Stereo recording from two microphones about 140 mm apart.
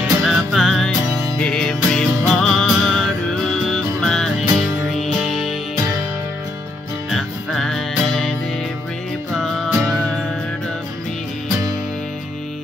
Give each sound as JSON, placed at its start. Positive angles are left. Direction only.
{"t": 0.2, "sound": "music", "side_deg": 0}
{"t": 7.1, "sound": "music", "side_deg": 0}